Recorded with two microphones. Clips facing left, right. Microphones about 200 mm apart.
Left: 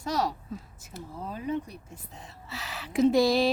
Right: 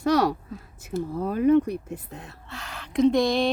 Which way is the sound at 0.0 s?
65° right (ahead or behind).